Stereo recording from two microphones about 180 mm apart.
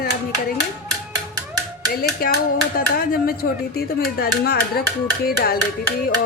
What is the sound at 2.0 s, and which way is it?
Speech, 55° left (ahead or behind).